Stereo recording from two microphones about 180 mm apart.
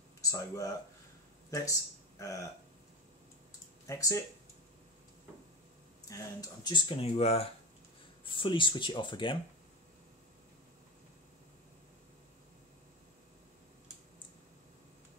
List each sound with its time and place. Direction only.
0.2 s speech: 15° left (ahead or behind)
3.8 s speech: 20° left (ahead or behind)
6.0 s speech: 20° left (ahead or behind)